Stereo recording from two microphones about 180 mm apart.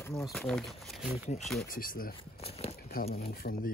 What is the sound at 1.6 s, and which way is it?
Speech, 50° left (ahead or behind).